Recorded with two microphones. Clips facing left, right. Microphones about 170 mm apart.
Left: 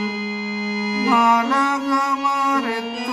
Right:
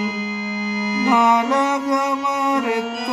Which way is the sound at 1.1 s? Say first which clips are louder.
Right 1 dB; 20° right (ahead or behind).